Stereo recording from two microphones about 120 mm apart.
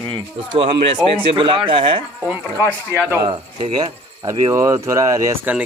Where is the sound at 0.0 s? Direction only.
40° right (ahead or behind).